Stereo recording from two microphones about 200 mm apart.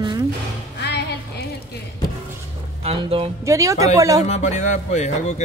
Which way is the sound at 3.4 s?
15° right (ahead or behind).